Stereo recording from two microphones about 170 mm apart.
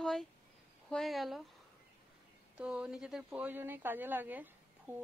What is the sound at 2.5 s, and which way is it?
Speech, 5° right (ahead or behind).